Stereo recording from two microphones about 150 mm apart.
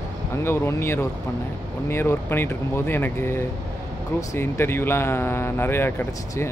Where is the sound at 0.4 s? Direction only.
15° left (ahead or behind).